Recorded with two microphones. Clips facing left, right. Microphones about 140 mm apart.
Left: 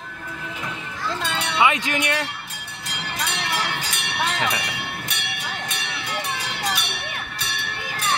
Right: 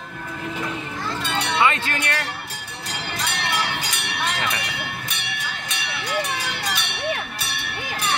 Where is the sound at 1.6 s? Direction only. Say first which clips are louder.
Left 2 dB; 15° left (ahead or behind).